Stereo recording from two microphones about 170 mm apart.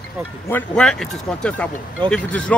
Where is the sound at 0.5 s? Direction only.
5° left (ahead or behind).